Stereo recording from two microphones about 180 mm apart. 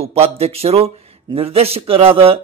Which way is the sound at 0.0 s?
35° right (ahead or behind).